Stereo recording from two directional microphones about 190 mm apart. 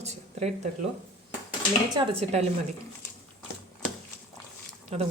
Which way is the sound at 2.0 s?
35° right (ahead or behind).